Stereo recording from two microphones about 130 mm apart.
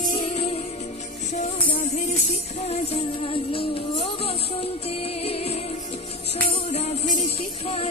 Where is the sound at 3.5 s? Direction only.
45° left (ahead or behind).